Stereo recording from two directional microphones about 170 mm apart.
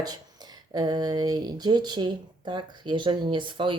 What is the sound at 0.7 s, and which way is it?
Speech, 25° right (ahead or behind).